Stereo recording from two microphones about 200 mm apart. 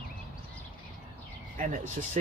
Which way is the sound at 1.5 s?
40° right (ahead or behind).